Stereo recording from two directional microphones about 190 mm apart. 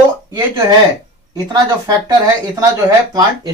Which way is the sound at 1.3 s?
20° right (ahead or behind).